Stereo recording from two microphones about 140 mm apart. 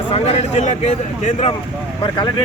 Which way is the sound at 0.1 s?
50° left (ahead or behind).